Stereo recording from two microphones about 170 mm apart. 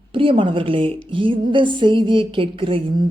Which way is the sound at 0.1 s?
30° right (ahead or behind).